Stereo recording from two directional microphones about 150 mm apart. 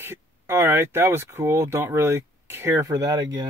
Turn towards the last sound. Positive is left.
turn(degrees=-25)  # may be behind; listen again after turning